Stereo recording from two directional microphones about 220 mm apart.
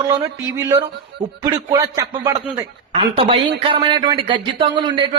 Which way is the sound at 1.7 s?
15° right (ahead or behind).